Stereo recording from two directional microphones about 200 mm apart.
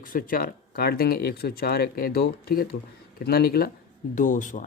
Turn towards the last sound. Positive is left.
turn(degrees=40)  # may be behind; listen again after turning